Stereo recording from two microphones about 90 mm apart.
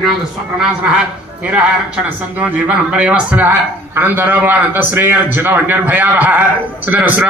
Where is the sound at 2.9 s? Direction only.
10° right (ahead or behind).